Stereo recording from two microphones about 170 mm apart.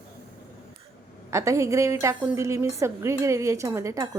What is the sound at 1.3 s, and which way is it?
A woman's voice, 15° right (ahead or behind).